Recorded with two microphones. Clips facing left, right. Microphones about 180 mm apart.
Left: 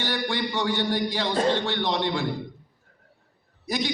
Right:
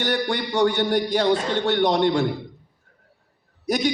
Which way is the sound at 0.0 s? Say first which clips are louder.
Right 4 dB; 45° right (ahead or behind).